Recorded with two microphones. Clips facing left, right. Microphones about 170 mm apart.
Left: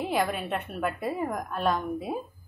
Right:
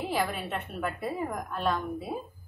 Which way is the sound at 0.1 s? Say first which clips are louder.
Left 3 dB; 5° left (ahead or behind).